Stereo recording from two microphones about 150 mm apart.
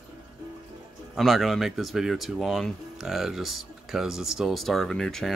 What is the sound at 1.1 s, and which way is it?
Speech, centre (ahead or behind).